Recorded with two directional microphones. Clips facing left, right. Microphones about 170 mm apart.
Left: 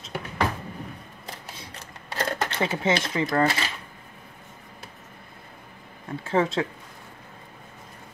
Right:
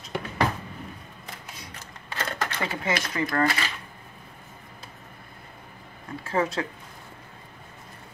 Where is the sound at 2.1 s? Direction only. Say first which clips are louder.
Left 3 dB; 30° left (ahead or behind).